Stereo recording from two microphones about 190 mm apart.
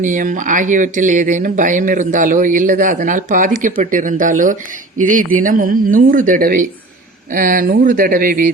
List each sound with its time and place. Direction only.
0.0 s speech: 45° right (ahead or behind)